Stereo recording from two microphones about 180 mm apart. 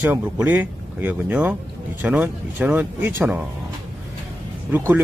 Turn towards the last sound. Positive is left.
turn(degrees=-10)  # may be behind; listen again after turning